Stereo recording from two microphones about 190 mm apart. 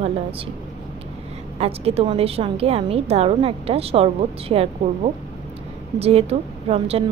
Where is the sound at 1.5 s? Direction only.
30° right (ahead or behind).